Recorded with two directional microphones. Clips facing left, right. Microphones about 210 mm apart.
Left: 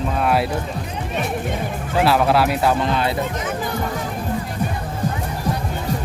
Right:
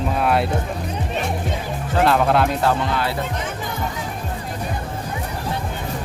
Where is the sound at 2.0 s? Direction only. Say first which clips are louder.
Even; 5° left (ahead or behind); by 3.1 s 20° left (ahead or behind).